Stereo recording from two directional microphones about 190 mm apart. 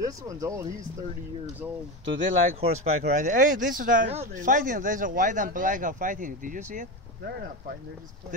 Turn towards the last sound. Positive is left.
turn(degrees=-55)  # may be behind; listen again after turning